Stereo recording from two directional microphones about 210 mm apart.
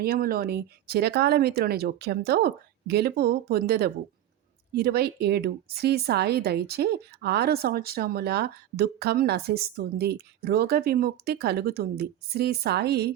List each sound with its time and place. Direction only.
0.0 s a woman's voice: 45° right (ahead or behind)